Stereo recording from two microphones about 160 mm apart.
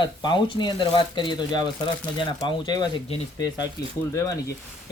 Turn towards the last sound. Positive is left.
turn(degrees=15)  # may be behind; listen again after turning